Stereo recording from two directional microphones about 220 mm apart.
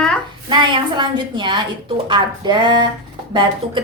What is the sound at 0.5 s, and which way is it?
A woman's voice, 20° right (ahead or behind).